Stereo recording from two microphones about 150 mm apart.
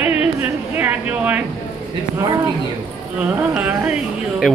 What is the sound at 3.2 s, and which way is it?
Speech, 5° right (ahead or behind).